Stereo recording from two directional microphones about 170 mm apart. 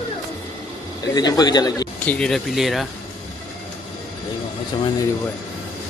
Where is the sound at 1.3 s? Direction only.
25° left (ahead or behind).